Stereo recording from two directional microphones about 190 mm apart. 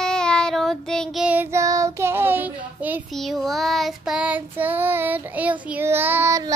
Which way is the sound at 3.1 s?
Centre (ahead or behind).